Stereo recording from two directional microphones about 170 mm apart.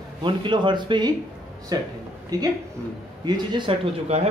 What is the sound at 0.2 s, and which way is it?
Speech, 30° right (ahead or behind).